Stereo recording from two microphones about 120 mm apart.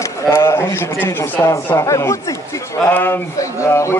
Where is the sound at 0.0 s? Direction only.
20° left (ahead or behind).